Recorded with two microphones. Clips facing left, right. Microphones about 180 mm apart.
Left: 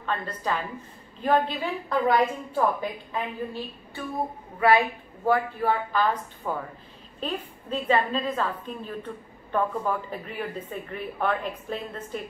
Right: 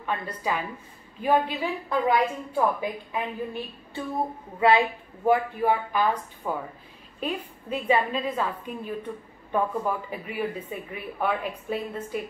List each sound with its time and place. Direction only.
0.0 s a woman's voice: 10° right (ahead or behind)
4.6 s a woman's voice: 20° right (ahead or behind)